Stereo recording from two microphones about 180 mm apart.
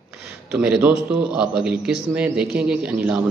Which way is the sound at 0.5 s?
5° right (ahead or behind).